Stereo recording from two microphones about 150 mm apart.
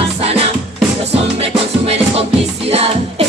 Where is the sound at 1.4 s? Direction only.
40° right (ahead or behind).